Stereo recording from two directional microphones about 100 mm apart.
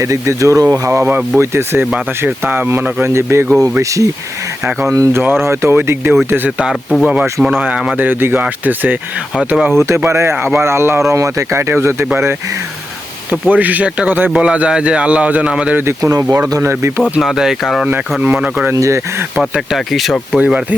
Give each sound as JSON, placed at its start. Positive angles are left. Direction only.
{"t": 0.0, "sound": "speech", "side_deg": -30}
{"t": 1.8, "sound": "speech", "side_deg": -10}
{"t": 13.5, "sound": "speech", "side_deg": -15}
{"t": 15.8, "sound": "speech", "side_deg": -30}
{"t": 17.0, "sound": "speech", "side_deg": 0}
{"t": 18.7, "sound": "speech", "side_deg": -30}
{"t": 19.4, "sound": "speech", "side_deg": 0}
{"t": 20.4, "sound": "speech", "side_deg": -10}